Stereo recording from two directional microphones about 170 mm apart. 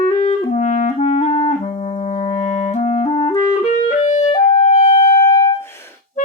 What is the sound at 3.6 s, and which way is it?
Music, 45° left (ahead or behind).